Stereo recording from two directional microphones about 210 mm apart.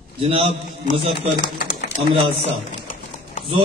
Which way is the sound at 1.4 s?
40° left (ahead or behind).